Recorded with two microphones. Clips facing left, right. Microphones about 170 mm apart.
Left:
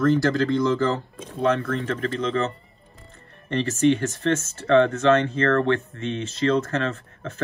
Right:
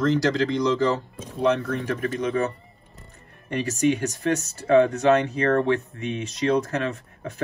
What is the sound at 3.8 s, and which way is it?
Speech, 15° right (ahead or behind).